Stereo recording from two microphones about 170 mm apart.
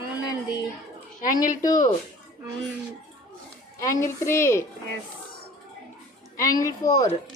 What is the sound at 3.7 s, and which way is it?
Speech, 20° left (ahead or behind).